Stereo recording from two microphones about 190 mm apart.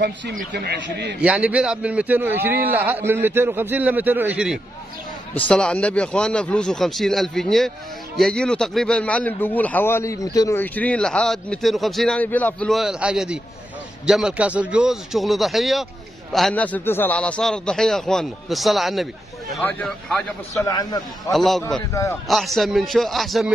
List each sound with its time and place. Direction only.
0.0 s a man's voice: 55° right (ahead or behind)
1.2 s a man's voice: 5° right (ahead or behind)
5.3 s a man's voice: 5° left (ahead or behind)
20.5 s a man's voice: 20° left (ahead or behind)
21.3 s a man's voice: centre (ahead or behind)